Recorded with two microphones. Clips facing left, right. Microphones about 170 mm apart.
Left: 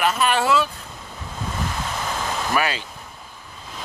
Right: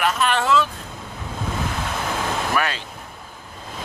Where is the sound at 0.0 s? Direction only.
5° left (ahead or behind).